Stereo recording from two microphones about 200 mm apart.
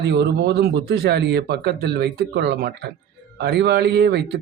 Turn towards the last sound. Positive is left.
turn(degrees=-55)  # may be behind; listen again after turning